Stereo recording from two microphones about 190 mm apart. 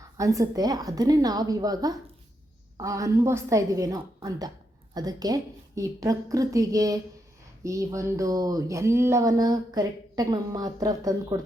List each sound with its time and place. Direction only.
0.2 s a woman's voice: 15° right (ahead or behind)